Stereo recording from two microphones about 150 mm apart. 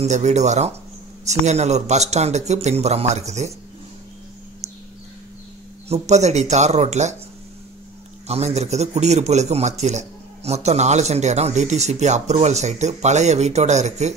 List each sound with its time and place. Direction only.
0.0 s a man's voice: 50° right (ahead or behind)
5.9 s a man's voice: 50° right (ahead or behind)
8.3 s a man's voice: 45° right (ahead or behind)